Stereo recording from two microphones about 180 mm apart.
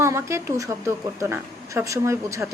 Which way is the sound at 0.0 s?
15° right (ahead or behind).